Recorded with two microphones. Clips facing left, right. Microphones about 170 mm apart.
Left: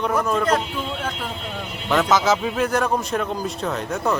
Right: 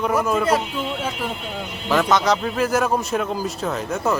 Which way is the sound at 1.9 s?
Centre (ahead or behind).